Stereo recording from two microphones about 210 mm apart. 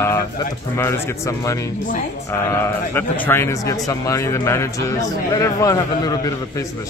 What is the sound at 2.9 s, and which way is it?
A man's voice, 10° left (ahead or behind).